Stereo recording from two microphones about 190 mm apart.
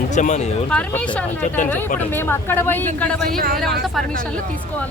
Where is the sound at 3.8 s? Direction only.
Centre (ahead or behind).